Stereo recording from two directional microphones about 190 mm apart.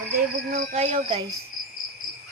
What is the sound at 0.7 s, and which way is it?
Cricket, 35° right (ahead or behind).